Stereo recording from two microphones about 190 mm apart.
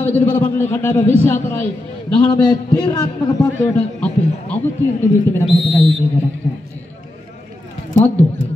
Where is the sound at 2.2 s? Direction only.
20° left (ahead or behind).